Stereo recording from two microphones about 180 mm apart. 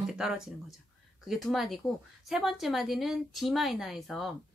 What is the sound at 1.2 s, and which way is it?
A woman's voice, centre (ahead or behind).